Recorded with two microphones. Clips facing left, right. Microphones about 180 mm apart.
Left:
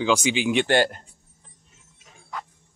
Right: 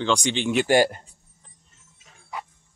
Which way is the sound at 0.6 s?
10° right (ahead or behind).